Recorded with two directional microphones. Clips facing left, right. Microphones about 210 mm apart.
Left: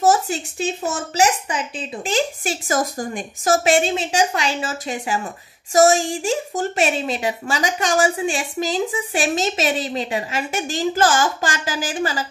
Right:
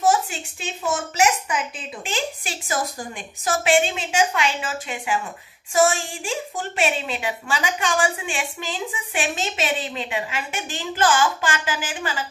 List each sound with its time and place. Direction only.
0.0 s speech: 40° left (ahead or behind)
2.0 s a woman's voice: 45° left (ahead or behind)